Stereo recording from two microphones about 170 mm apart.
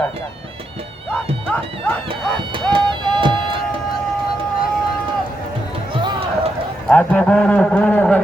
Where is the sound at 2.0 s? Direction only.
30° right (ahead or behind).